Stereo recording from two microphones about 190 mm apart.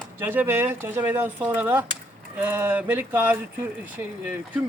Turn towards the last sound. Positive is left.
turn(degrees=-10)  # may be behind; listen again after turning